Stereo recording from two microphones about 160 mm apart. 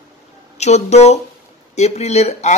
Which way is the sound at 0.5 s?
45° left (ahead or behind).